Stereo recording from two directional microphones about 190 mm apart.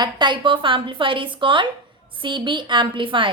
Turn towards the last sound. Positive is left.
turn(degrees=-25)  # may be behind; listen again after turning